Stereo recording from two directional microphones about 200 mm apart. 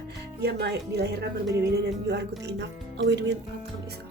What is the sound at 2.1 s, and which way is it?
Speech, 55° right (ahead or behind).